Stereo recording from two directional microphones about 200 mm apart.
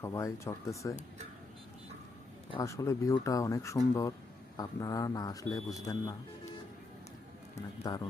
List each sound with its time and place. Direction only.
0.0 s speech: 15° left (ahead or behind)
2.5 s speech: 15° left (ahead or behind)
7.9 s speech: 20° left (ahead or behind)